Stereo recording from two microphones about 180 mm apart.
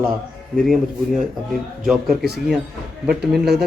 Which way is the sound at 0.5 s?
Centre (ahead or behind).